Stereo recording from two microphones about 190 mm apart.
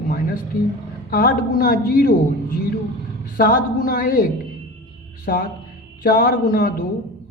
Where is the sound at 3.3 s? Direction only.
50° left (ahead or behind).